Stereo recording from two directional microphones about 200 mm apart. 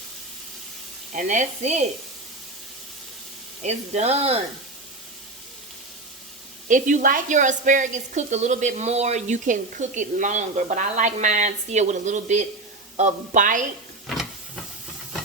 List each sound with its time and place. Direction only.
1.1 s a woman's voice: 40° right (ahead or behind)
3.6 s a woman's voice: 35° right (ahead or behind)
6.7 s a woman's voice: 40° right (ahead or behind)